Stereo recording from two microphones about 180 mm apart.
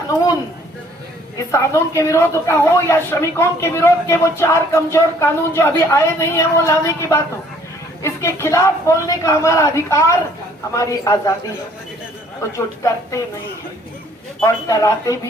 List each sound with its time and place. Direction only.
1.5 s a woman's voice: 15° left (ahead or behind)
12.4 s a woman's voice: 15° left (ahead or behind)
14.4 s a woman's voice: 20° left (ahead or behind)